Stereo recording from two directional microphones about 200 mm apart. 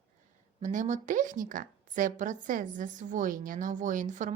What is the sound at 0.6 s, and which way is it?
A woman's voice, 40° right (ahead or behind).